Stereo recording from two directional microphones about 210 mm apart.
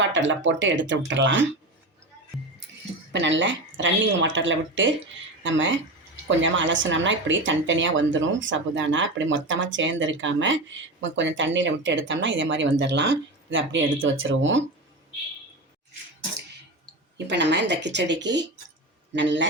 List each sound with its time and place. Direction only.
0.0 s speech: 60° right (ahead or behind)
3.1 s speech: 60° right (ahead or behind)
17.2 s speech: 55° right (ahead or behind)